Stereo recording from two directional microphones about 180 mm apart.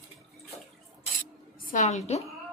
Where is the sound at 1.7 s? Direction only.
40° left (ahead or behind).